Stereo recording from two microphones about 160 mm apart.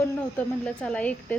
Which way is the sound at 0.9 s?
10° left (ahead or behind).